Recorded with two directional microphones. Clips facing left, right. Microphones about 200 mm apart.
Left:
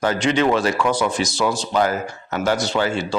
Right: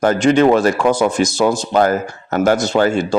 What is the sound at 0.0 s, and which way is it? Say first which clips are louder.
Speech: right 6 dB; 50° right (ahead or behind).